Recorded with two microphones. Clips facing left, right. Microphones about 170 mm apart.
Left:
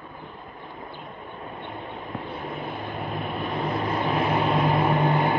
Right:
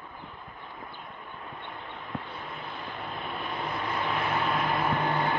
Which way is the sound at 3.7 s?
35° left (ahead or behind).